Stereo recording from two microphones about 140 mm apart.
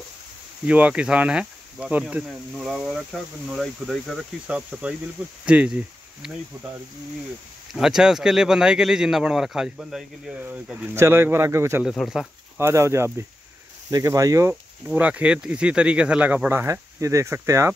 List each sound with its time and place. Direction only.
0.7 s speech: 10° right (ahead or behind)
4.5 s speech: 10° right (ahead or behind)
7.7 s speech: 5° right (ahead or behind); by 11.8 s 20° right (ahead or behind)
12.0 s speech: 5° right (ahead or behind)
12.5 s speech: 20° right (ahead or behind)
14.5 s speech: 10° right (ahead or behind)